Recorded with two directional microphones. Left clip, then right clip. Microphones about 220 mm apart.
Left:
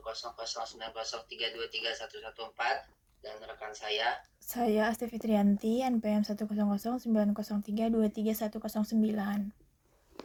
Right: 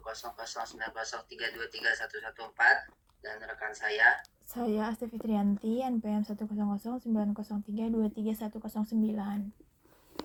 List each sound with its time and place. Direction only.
0.1 s a man's voice: 5° right (ahead or behind)
3.2 s a man's voice: 10° right (ahead or behind)
4.5 s speech: 30° left (ahead or behind)